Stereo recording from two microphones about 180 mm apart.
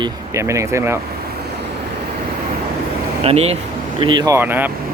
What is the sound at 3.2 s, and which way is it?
Speech, 35° right (ahead or behind).